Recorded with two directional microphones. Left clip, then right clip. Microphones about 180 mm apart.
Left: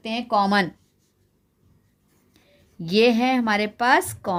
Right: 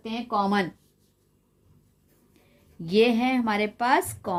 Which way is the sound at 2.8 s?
30° left (ahead or behind).